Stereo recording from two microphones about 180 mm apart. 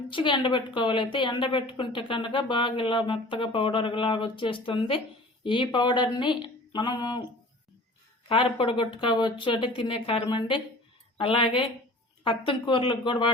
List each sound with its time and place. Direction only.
0.1 s a woman's voice: 25° left (ahead or behind)
8.3 s a woman's voice: 30° left (ahead or behind)